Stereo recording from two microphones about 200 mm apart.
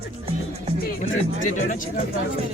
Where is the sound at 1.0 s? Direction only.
35° left (ahead or behind).